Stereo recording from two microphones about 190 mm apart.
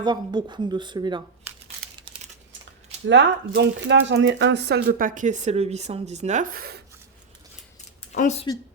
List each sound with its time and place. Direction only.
0.0 s speech: 25° right (ahead or behind)
3.1 s speech: 65° right (ahead or behind)
8.1 s speech: 40° left (ahead or behind)